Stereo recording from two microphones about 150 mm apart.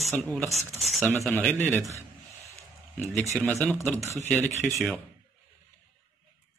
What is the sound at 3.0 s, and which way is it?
Speech, centre (ahead or behind).